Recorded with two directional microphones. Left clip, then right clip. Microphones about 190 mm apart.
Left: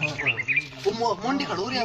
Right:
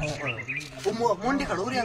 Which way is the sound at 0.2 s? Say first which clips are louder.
Left 8 dB; 25° right (ahead or behind).